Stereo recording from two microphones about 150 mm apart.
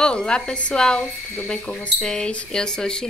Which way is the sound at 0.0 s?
5° left (ahead or behind).